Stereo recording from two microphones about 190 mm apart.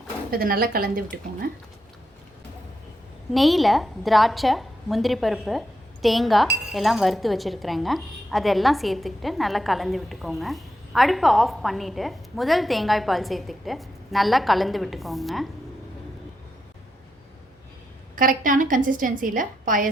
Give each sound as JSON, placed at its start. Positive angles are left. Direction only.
{"t": 0.3, "sound": "a woman's voice", "side_deg": -50}
{"t": 3.3, "sound": "a woman's voice", "side_deg": 0}
{"t": 18.2, "sound": "a woman's voice", "side_deg": -45}